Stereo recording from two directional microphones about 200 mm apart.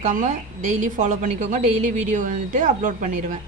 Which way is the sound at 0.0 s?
40° right (ahead or behind).